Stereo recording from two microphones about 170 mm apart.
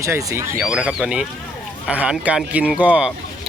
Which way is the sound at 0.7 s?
5° right (ahead or behind).